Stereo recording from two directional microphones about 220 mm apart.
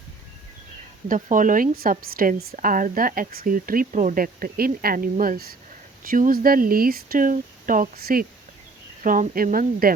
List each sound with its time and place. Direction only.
1.0 s speech: 35° right (ahead or behind)